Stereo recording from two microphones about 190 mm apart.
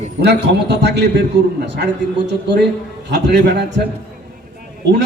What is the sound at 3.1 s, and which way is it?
Speech, 65° right (ahead or behind).